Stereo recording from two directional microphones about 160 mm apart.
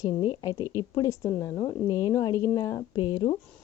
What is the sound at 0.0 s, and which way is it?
A woman's voice, 25° left (ahead or behind).